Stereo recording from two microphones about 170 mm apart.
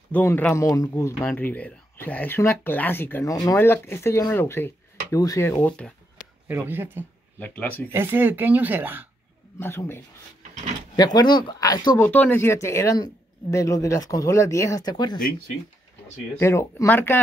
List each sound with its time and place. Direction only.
0.1 s speech: 10° left (ahead or behind)
6.7 s speech: 10° right (ahead or behind)
7.3 s speech: 10° left (ahead or behind)
7.9 s speech: 15° right (ahead or behind)
9.6 s speech: 15° left (ahead or behind)
11.1 s speech: 25° left (ahead or behind)
12.1 s speech: 10° left (ahead or behind)
16.3 s speech: 15° left (ahead or behind)